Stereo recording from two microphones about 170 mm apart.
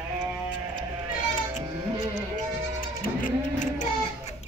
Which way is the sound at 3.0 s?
55° left (ahead or behind).